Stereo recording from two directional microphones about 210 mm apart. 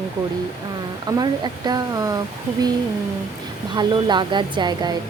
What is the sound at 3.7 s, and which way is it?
Speech, 20° right (ahead or behind).